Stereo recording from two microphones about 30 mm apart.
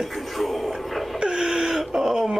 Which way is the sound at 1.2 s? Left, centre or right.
Right.